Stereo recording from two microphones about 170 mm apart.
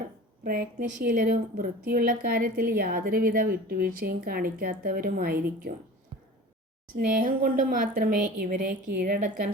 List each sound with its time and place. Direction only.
0.4 s a woman's voice: 60° right (ahead or behind)
6.9 s a woman's voice: 55° right (ahead or behind)